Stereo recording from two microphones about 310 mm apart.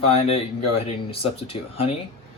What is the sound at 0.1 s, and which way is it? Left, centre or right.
Speech, centre.